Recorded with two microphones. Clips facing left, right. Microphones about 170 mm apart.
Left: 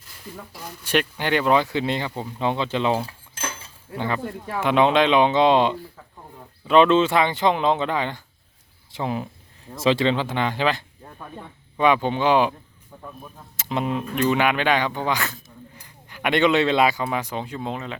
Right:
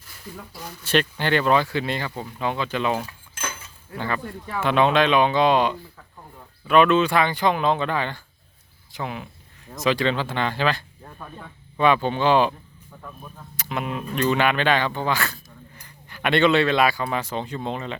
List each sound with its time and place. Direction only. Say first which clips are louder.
0.9 s speech: right 1 dB; 10° left (ahead or behind); by 3.7 s 30° left (ahead or behind)
3.9 s speech: left 2 dB; 20° left (ahead or behind)
8.9 s speech: left 5 dB; 30° left (ahead or behind)
9.8 s speech: left 2 dB; 25° left (ahead or behind)
13.6 s speech: left 4 dB; 25° left (ahead or behind)
14.2 s speech: even; 15° left (ahead or behind)